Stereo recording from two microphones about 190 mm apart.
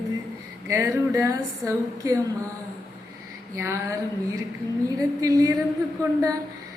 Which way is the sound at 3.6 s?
15° right (ahead or behind).